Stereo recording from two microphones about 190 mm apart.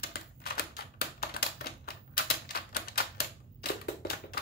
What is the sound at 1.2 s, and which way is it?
Typewriter, 55° left (ahead or behind).